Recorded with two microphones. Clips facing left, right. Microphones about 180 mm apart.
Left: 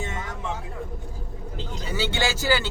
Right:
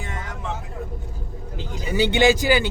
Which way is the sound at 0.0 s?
25° left (ahead or behind).